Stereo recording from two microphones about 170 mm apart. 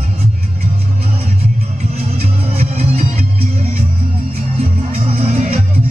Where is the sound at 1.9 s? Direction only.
35° right (ahead or behind).